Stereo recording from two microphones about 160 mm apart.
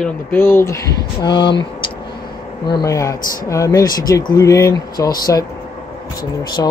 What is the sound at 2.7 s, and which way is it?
Speech, 25° left (ahead or behind).